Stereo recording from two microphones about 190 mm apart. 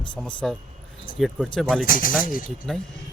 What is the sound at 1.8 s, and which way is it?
Speech, 45° left (ahead or behind).